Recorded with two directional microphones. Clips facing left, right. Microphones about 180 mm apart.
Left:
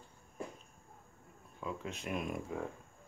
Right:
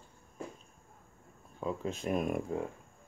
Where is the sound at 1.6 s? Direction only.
35° right (ahead or behind).